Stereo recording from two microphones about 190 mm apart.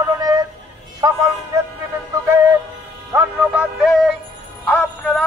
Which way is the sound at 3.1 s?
5° right (ahead or behind).